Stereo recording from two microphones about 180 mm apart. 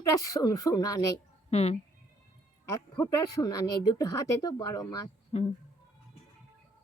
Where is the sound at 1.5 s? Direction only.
35° left (ahead or behind).